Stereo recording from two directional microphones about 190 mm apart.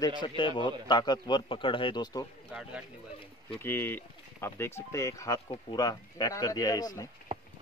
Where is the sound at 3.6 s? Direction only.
10° left (ahead or behind).